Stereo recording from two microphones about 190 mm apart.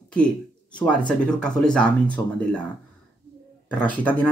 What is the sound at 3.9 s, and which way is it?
Speech, 5° left (ahead or behind).